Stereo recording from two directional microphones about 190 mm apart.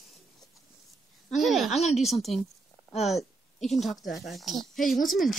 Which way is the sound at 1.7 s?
35° left (ahead or behind).